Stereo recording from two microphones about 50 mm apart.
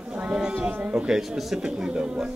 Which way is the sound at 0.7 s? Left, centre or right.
Right.